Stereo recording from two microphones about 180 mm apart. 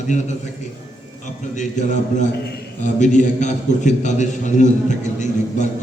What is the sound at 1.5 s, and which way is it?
A man's voice, 40° left (ahead or behind).